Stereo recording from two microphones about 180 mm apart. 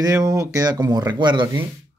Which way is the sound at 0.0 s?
20° right (ahead or behind).